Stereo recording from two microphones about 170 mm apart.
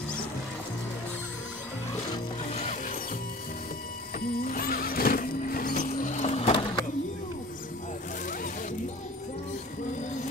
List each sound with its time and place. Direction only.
2.5 s music: 40° left (ahead or behind)
4.4 s music: 60° left (ahead or behind); by 6.5 s 40° left (ahead or behind)
6.5 s a sound: 30° left (ahead or behind)